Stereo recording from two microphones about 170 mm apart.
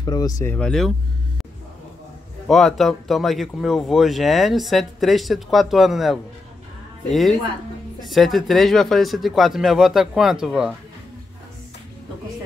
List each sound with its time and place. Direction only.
0.0 s speech: 20° left (ahead or behind)
0.6 s speech: 5° left (ahead or behind)
2.4 s speech: centre (ahead or behind)